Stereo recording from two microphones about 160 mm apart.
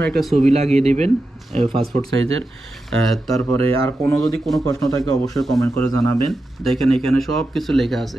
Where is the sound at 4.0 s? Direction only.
Centre (ahead or behind).